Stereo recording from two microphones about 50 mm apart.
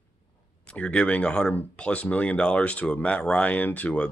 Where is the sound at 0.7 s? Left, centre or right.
Left.